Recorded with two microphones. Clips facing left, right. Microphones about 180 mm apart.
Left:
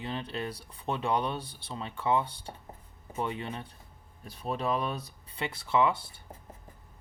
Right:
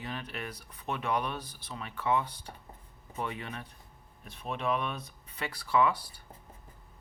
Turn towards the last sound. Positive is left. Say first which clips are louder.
# left 1 dB
turn(degrees=25)  # may be behind; listen again after turning